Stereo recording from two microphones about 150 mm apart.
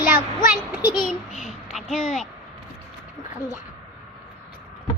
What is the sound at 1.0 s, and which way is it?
A child's voice, centre (ahead or behind).